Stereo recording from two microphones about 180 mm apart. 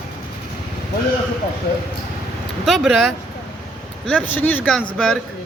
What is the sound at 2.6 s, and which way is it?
Speech, centre (ahead or behind).